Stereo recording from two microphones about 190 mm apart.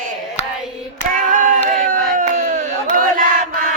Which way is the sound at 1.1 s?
45° right (ahead or behind).